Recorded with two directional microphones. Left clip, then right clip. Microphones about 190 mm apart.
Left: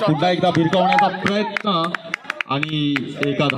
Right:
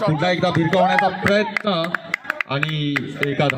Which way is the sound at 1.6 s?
55° right (ahead or behind).